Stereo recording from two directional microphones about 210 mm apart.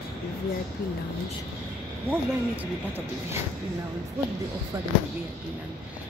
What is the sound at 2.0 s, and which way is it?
Speech, 10° right (ahead or behind).